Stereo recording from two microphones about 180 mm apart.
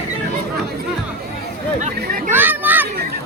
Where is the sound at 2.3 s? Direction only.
10° right (ahead or behind).